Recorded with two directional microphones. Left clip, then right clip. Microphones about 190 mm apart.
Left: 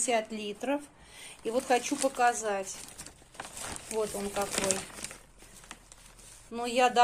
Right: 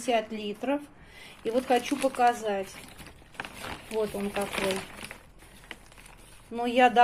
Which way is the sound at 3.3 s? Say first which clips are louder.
Right 4 dB; 20° left (ahead or behind).